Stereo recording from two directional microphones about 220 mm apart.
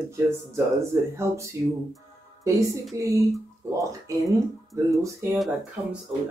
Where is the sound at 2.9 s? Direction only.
15° right (ahead or behind).